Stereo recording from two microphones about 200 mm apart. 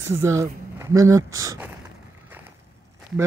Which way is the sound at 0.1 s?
15° right (ahead or behind).